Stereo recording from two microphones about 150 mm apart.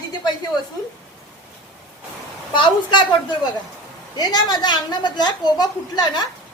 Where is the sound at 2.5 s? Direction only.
30° left (ahead or behind).